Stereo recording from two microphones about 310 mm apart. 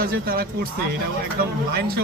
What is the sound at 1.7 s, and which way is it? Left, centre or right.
Speech, right.